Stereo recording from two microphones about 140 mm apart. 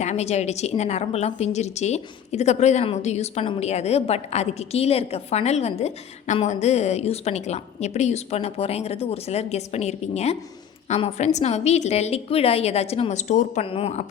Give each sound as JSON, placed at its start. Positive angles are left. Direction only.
{"t": 0.0, "sound": "a woman's voice", "side_deg": 55}
{"t": 13.6, "sound": "a woman's voice", "side_deg": 45}